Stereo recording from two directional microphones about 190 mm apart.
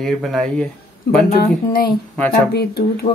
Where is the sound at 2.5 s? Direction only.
55° left (ahead or behind).